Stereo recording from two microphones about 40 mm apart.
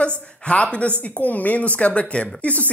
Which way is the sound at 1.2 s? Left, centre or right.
Left.